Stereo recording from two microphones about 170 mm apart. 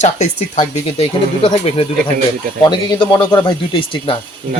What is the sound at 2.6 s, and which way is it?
Speech, 25° left (ahead or behind).